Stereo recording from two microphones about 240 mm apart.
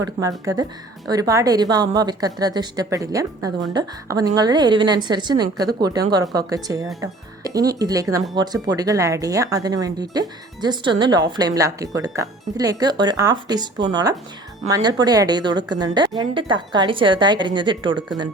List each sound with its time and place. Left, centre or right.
0.0 s a woman's voice: centre